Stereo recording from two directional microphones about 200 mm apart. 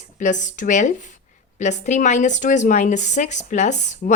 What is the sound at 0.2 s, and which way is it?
Speech, 40° left (ahead or behind).